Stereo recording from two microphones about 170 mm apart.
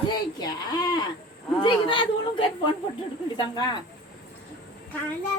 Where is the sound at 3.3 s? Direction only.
25° left (ahead or behind).